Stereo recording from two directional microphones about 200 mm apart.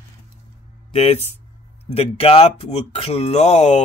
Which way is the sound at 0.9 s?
30° left (ahead or behind).